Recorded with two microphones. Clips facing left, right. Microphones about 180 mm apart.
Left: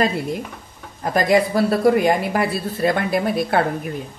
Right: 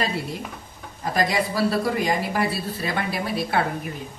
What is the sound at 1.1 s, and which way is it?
Speech, 50° left (ahead or behind).